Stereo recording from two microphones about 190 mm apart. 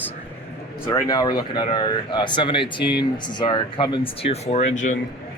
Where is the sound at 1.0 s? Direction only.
20° left (ahead or behind); by 4.9 s 40° left (ahead or behind).